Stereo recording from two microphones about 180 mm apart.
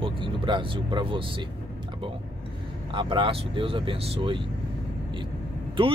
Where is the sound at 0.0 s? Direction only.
30° right (ahead or behind).